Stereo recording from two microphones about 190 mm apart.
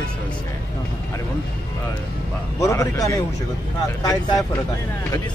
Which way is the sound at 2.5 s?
15° left (ahead or behind).